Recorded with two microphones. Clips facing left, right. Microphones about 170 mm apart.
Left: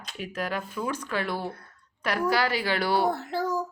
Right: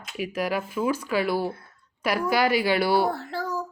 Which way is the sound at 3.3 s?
20° left (ahead or behind).